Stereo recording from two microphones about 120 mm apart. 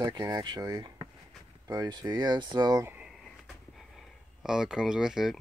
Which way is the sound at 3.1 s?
Centre (ahead or behind).